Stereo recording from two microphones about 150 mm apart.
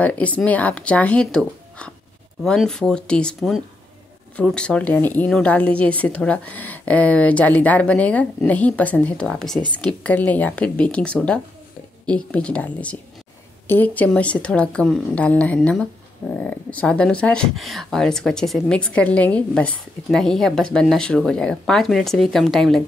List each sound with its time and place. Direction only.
0.0 s a woman's voice: 10° left (ahead or behind)